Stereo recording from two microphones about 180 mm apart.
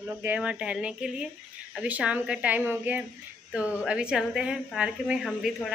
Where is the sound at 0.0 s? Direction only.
10° right (ahead or behind).